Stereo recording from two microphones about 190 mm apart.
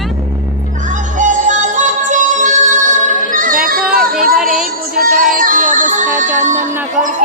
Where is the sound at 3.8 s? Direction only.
Centre (ahead or behind).